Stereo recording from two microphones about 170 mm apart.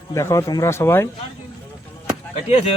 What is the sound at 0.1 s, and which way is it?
Speech, 15° left (ahead or behind).